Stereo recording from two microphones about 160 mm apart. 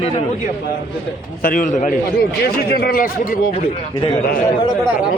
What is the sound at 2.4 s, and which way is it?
Speech, 75° left (ahead or behind).